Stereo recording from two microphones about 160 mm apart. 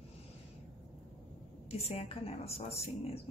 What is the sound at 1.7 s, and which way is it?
Speech, 40° left (ahead or behind).